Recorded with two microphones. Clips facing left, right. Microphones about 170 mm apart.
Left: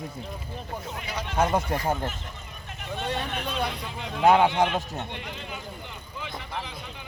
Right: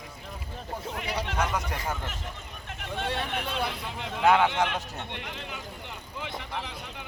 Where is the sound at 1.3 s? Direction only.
30° left (ahead or behind).